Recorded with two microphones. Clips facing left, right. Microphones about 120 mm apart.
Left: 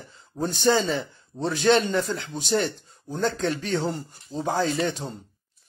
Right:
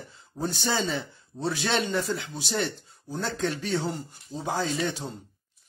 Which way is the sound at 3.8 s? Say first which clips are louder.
Left 3 dB; 45° left (ahead or behind).